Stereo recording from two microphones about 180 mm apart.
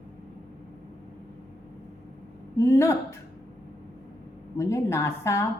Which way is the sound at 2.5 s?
15° left (ahead or behind).